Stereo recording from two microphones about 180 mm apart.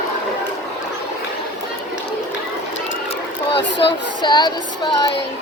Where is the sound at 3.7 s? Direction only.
70° left (ahead or behind).